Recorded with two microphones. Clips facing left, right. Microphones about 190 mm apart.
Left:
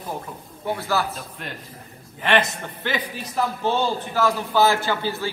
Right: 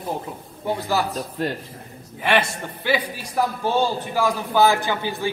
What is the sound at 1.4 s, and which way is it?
Speech, 35° right (ahead or behind).